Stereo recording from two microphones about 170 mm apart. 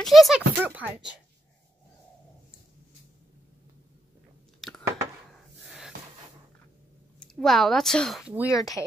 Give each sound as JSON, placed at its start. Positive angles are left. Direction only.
{"t": 0.0, "sound": "speech", "side_deg": 0}
{"t": 4.6, "sound": "a sound", "side_deg": 0}
{"t": 7.2, "sound": "a woman's voice", "side_deg": 0}
{"t": 8.5, "sound": "speech", "side_deg": 20}